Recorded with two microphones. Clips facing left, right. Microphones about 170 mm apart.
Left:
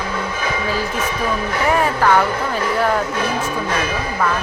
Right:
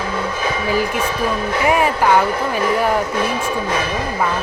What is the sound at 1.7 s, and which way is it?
Music, 15° right (ahead or behind).